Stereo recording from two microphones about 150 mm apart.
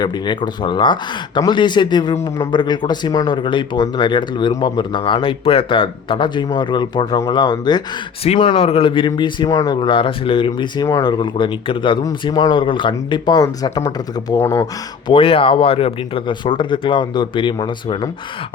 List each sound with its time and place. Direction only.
0.0 s speech: 30° left (ahead or behind)
15.1 s speech: 35° left (ahead or behind)